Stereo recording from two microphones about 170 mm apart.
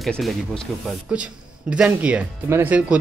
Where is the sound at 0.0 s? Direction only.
Centre (ahead or behind).